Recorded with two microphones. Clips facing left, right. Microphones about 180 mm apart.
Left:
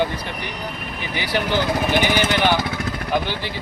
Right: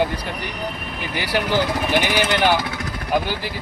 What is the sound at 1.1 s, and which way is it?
Speech, 5° right (ahead or behind).